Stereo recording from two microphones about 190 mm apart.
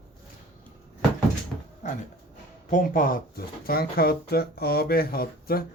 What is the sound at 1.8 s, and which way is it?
Dog, 40° left (ahead or behind).